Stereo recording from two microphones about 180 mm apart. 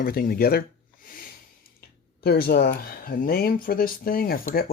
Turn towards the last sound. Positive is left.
turn(degrees=55)  # may be behind; listen again after turning